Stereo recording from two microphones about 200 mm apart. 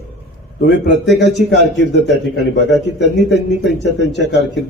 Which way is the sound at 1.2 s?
60° left (ahead or behind).